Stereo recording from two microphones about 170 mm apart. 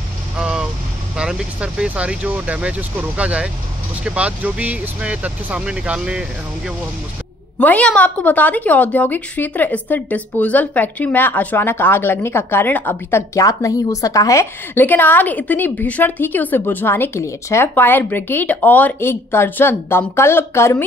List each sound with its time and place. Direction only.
0.4 s vehicle: 5° right (ahead or behind)
1.1 s speech: 5° right (ahead or behind)
7.5 s a woman's voice: 10° left (ahead or behind)